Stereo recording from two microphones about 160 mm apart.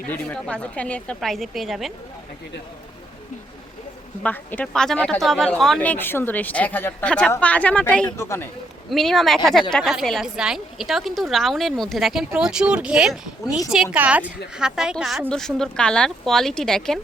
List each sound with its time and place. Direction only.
0.1 s a woman's voice: 10° left (ahead or behind)
4.2 s speech: 10° left (ahead or behind)
8.1 s speech: 15° left (ahead or behind)
8.9 s a woman's voice: centre (ahead or behind)